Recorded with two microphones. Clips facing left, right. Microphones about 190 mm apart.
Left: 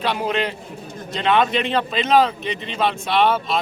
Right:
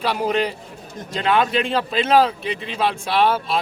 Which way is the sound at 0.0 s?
10° right (ahead or behind).